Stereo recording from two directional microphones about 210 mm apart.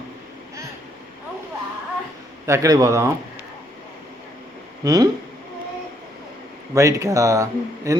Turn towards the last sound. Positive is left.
turn(degrees=-15)  # may be behind; listen again after turning